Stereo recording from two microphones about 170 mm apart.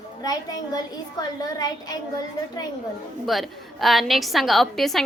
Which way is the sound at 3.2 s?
Centre (ahead or behind).